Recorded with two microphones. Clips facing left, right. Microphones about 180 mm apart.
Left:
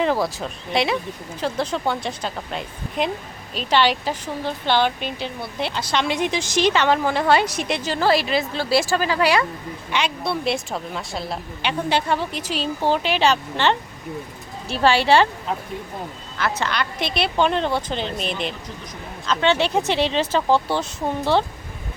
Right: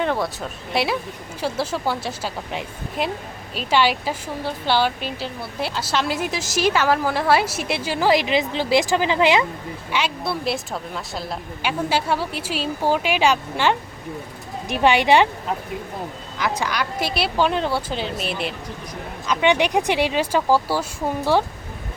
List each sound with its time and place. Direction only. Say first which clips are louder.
0.0 s speech: left 2 dB; centre (ahead or behind); by 9.5 s 20° right (ahead or behind)
9.9 s speech: left 1 dB; 5° right (ahead or behind)
16.4 s speech: even; 10° right (ahead or behind)